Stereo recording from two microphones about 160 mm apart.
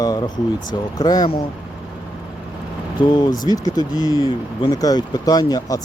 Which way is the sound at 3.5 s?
25° left (ahead or behind).